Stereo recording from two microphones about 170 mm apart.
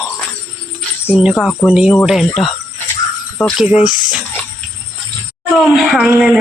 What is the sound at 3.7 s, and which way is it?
Speech, 5° right (ahead or behind).